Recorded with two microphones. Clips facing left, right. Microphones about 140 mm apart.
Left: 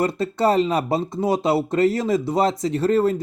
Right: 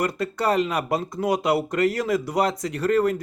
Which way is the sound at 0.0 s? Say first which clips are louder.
Left 4 dB; 30° left (ahead or behind).